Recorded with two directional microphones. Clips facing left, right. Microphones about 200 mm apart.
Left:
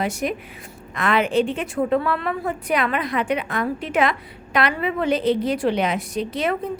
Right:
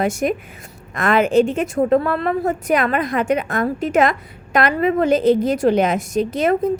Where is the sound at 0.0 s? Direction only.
45° right (ahead or behind).